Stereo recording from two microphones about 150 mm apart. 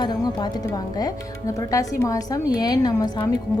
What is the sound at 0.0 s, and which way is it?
Speech, 30° left (ahead or behind).